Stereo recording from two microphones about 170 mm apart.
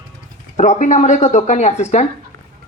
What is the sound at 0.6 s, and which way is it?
A man's voice, 45° left (ahead or behind).